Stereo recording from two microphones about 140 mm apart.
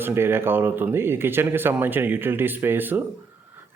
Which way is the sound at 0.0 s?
15° right (ahead or behind).